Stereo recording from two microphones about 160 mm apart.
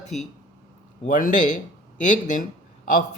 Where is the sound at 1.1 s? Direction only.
60° left (ahead or behind).